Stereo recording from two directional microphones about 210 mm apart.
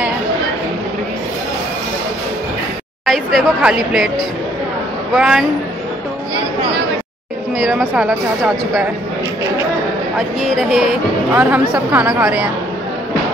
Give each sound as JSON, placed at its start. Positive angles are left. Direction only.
{"t": 3.1, "sound": "speech", "side_deg": 0}
{"t": 5.1, "sound": "speech", "side_deg": 0}
{"t": 7.6, "sound": "speech", "side_deg": -5}
{"t": 10.1, "sound": "speech", "side_deg": 0}